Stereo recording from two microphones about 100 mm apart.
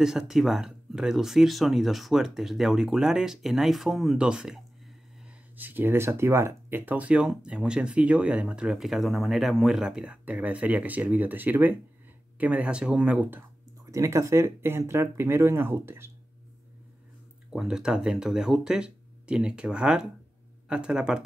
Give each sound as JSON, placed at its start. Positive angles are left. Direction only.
{"t": 0.0, "sound": "speech", "side_deg": -5}
{"t": 5.6, "sound": "speech", "side_deg": -20}
{"t": 13.8, "sound": "speech", "side_deg": -35}
{"t": 17.5, "sound": "speech", "side_deg": -5}